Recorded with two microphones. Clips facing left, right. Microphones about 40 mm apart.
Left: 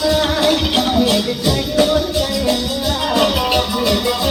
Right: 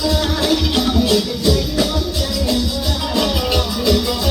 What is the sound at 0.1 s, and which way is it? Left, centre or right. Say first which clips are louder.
Music: left 3 dB; left.